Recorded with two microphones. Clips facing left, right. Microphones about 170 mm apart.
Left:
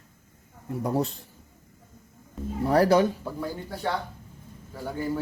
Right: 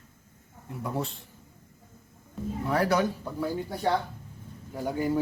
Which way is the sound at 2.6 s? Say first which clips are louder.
Left 5 dB; 35° left (ahead or behind).